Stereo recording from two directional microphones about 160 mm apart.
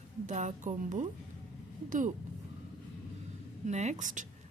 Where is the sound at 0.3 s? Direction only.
50° right (ahead or behind).